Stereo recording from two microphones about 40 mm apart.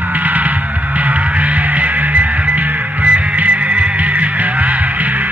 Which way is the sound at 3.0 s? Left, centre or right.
Right.